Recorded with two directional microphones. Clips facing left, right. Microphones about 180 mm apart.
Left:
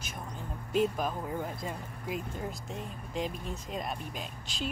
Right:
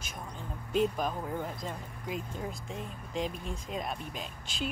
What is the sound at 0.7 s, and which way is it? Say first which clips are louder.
Speech: even; 5° left (ahead or behind).